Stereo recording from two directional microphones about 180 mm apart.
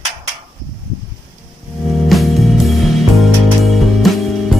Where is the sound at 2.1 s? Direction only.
Centre (ahead or behind).